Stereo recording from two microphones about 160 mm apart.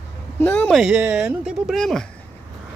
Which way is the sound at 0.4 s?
10° left (ahead or behind).